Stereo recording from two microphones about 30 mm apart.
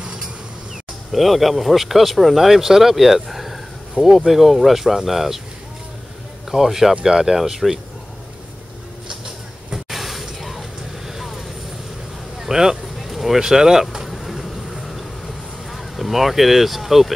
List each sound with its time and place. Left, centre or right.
1.1 s speech: centre
4.0 s speech: right
4.3 s speech: centre
6.5 s speech: centre
7.1 s speech: right
9.1 s train: right
9.8 s a sound: centre
11.1 s vehicle: centre
12.4 s a sound: centre
13.1 s vehicle: centre
13.4 s speech: right
14.1 s vehicle: centre